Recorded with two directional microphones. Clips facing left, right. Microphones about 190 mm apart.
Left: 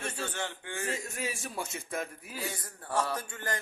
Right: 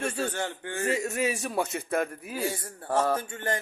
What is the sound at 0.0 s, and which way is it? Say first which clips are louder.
Speech: right 6 dB; 50° right (ahead or behind).